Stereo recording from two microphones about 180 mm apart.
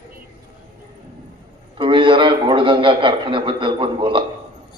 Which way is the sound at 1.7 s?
30° right (ahead or behind).